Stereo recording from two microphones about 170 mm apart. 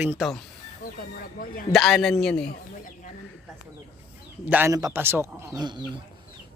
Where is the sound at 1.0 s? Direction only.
60° left (ahead or behind).